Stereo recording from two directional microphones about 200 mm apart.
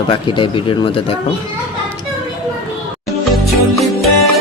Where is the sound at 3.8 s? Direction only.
Centre (ahead or behind).